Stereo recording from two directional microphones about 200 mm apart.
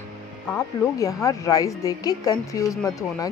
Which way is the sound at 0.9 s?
15° left (ahead or behind).